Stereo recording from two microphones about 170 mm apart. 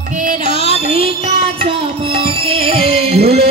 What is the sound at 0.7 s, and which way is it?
Music, 35° right (ahead or behind).